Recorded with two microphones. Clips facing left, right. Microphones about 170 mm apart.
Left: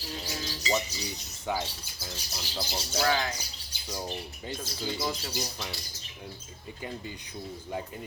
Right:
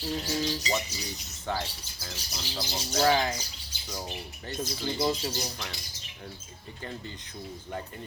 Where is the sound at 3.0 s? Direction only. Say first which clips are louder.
Right 4 dB; 30° right (ahead or behind).